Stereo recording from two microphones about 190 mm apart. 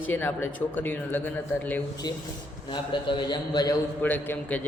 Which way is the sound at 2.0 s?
20° left (ahead or behind).